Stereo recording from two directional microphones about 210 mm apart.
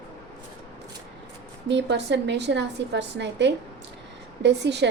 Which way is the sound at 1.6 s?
55° right (ahead or behind).